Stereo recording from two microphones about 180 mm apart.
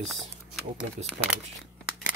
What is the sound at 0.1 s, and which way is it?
Speech, centre (ahead or behind).